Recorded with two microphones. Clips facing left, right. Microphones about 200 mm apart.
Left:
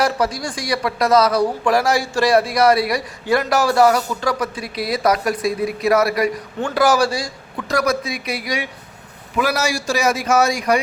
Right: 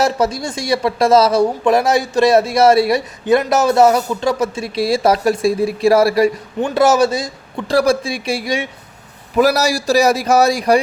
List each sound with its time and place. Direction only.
0.0 s speech: 25° right (ahead or behind)
9.4 s a man's voice: 35° right (ahead or behind)